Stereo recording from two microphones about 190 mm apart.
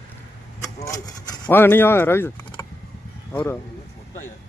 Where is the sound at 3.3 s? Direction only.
10° left (ahead or behind).